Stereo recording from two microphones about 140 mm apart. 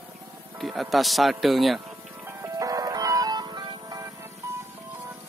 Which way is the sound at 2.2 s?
25° right (ahead or behind).